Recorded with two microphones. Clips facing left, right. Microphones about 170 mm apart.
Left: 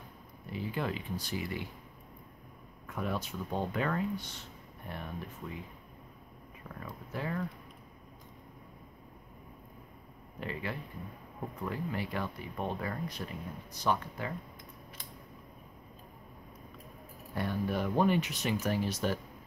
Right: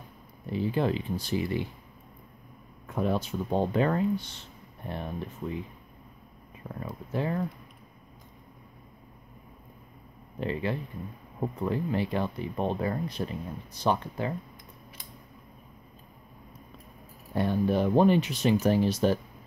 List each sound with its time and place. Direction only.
0.5 s speech: 30° right (ahead or behind)
2.9 s speech: 30° right (ahead or behind)
6.7 s speech: 25° right (ahead or behind)
10.4 s speech: 25° right (ahead or behind)
17.3 s speech: 25° right (ahead or behind)